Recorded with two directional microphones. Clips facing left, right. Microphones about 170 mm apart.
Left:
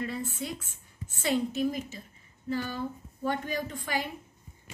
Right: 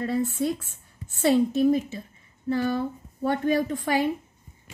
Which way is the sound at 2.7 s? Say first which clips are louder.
Right 7 dB; 60° right (ahead or behind).